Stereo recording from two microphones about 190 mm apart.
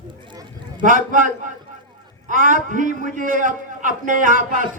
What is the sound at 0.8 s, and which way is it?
A man's voice, 45° right (ahead or behind).